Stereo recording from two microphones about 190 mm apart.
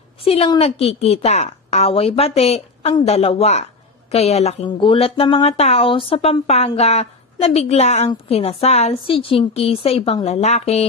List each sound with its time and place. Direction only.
0.2 s speech: 30° left (ahead or behind)